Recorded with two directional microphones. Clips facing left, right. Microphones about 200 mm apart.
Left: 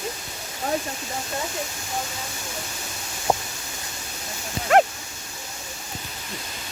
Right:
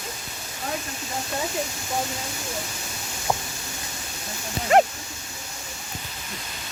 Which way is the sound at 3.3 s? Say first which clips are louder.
Left 3 dB; 20° left (ahead or behind).